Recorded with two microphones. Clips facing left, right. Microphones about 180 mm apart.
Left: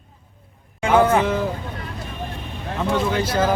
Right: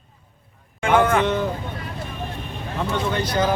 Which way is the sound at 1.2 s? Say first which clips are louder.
Even; 5° left (ahead or behind).